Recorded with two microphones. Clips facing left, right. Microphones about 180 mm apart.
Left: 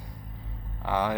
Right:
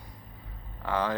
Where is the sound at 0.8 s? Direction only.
15° left (ahead or behind).